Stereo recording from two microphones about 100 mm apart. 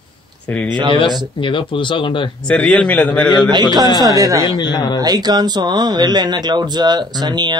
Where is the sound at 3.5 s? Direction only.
45° right (ahead or behind).